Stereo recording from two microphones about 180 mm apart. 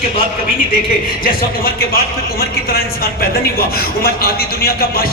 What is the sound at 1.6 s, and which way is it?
Speech, 60° left (ahead or behind).